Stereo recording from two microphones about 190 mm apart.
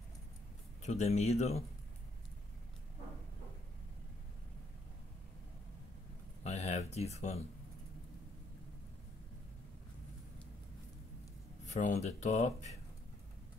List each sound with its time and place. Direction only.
0.8 s speech: 35° left (ahead or behind)
6.4 s a sound: 35° left (ahead or behind)
7.2 s speech: 35° left (ahead or behind)
11.6 s speech: 40° left (ahead or behind)